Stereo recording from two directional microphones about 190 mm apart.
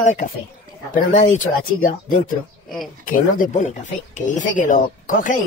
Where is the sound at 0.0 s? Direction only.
40° left (ahead or behind).